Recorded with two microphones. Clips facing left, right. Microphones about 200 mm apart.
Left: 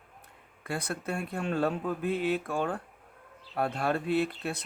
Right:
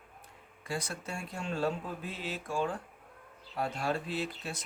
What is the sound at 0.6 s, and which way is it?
Speech, 60° left (ahead or behind).